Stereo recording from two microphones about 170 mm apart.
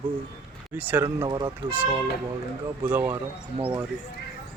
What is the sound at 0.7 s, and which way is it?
Speech, 10° right (ahead or behind).